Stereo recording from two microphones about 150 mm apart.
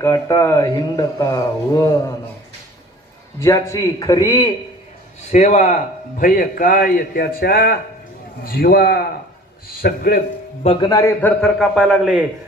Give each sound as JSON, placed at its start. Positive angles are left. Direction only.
{"t": 0.0, "sound": "speech", "side_deg": 20}
{"t": 3.3, "sound": "speech", "side_deg": 20}
{"t": 5.3, "sound": "a man's voice", "side_deg": 55}
{"t": 10.8, "sound": "speech", "side_deg": 20}
{"t": 11.4, "sound": "a man's voice", "side_deg": 0}